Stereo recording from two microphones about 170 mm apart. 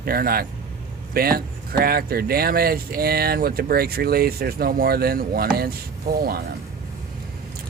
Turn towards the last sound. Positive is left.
turn(degrees=-65)  # may be behind; listen again after turning